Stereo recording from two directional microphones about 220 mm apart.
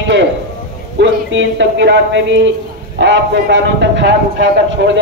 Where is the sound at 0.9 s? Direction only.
60° right (ahead or behind).